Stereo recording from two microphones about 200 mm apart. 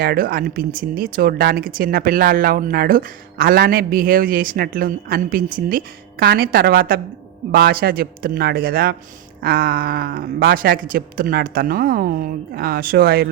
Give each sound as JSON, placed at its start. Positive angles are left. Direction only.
{"t": 0.0, "sound": "speech", "side_deg": -50}